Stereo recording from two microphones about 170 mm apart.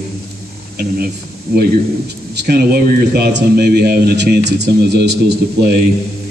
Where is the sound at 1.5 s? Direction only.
60° right (ahead or behind).